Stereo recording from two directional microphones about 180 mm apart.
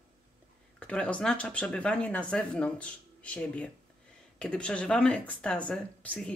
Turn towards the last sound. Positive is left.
turn(degrees=5)  # may be behind; listen again after turning